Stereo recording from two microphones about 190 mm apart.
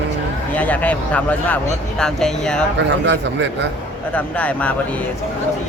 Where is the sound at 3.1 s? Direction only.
70° right (ahead or behind).